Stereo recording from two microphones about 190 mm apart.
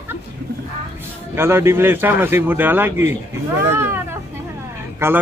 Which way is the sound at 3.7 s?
10° right (ahead or behind).